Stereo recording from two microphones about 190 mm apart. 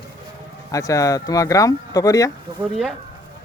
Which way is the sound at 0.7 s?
15° left (ahead or behind).